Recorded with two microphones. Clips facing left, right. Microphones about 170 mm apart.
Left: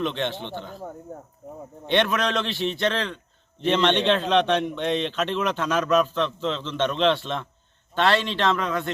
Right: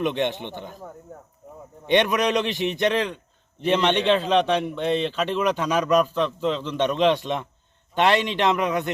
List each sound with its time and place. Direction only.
0.0 s a man's voice: 15° right (ahead or behind)
1.9 s a man's voice: 15° right (ahead or behind)